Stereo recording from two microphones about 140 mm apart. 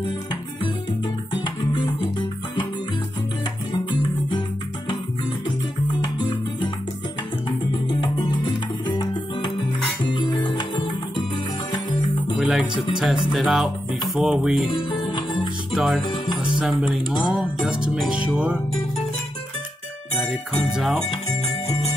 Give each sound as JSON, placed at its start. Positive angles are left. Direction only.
{"t": 0.0, "sound": "music", "side_deg": 35}
{"t": 5.9, "sound": "music", "side_deg": 35}
{"t": 12.4, "sound": "music", "side_deg": -10}
{"t": 12.9, "sound": "speech", "side_deg": -5}
{"t": 14.9, "sound": "music", "side_deg": 35}
{"t": 15.7, "sound": "music", "side_deg": 0}
{"t": 16.0, "sound": "music", "side_deg": 30}
{"t": 16.8, "sound": "music", "side_deg": 0}
{"t": 20.5, "sound": "music", "side_deg": 0}